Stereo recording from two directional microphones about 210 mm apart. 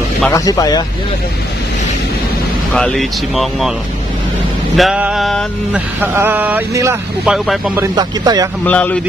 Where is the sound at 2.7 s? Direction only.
Centre (ahead or behind).